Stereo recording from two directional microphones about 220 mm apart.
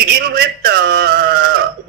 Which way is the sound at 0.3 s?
45° right (ahead or behind).